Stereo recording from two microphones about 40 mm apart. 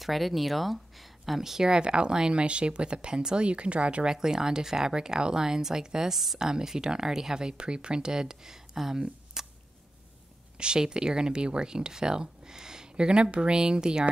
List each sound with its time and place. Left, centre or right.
0.0 s speech: centre; by 4.1 s right
4.1 s speech: centre
6.1 s a woman's voice: centre
9.4 s a sound: centre
10.6 s speech: right